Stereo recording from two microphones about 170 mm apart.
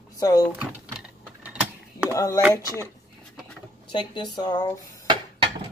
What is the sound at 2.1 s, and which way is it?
Speech, 20° left (ahead or behind).